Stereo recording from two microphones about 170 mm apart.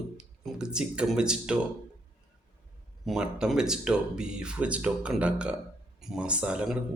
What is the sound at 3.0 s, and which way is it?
Speech, 5° right (ahead or behind).